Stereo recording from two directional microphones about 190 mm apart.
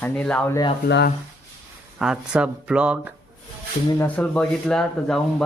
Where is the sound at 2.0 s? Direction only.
5° right (ahead or behind).